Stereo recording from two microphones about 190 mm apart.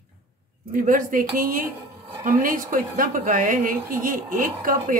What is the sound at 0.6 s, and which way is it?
Speech, 45° right (ahead or behind).